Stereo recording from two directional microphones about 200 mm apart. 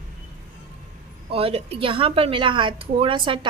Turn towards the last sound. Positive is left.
turn(degrees=-25)  # may be behind; listen again after turning